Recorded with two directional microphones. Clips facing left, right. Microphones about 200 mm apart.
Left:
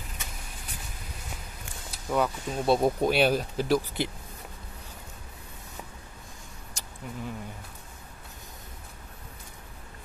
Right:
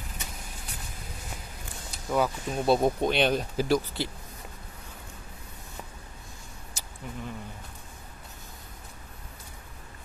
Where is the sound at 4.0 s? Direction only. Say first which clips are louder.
Left 2 dB; 20° left (ahead or behind).